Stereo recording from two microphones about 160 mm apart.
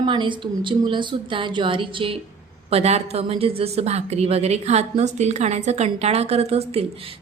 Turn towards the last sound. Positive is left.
turn(degrees=-40)  # may be behind; listen again after turning